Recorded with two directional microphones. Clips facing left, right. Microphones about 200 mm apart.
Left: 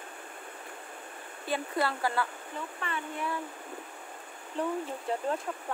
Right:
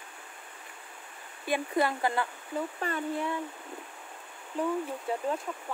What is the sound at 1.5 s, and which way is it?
Speech, 15° right (ahead or behind).